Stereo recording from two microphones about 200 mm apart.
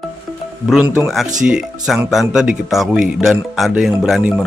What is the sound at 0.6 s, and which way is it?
Speech, 5° right (ahead or behind).